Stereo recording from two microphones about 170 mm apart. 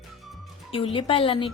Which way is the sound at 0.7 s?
30° left (ahead or behind).